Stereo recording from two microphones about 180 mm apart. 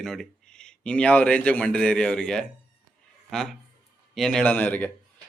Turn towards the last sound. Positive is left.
turn(degrees=10)  # may be behind; listen again after turning